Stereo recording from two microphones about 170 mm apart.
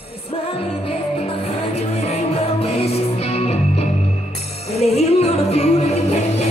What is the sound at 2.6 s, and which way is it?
Music, 35° left (ahead or behind).